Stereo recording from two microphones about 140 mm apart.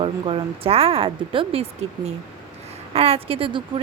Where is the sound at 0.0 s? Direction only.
40° right (ahead or behind).